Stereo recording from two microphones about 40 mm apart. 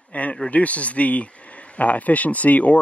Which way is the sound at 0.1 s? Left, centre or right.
Left.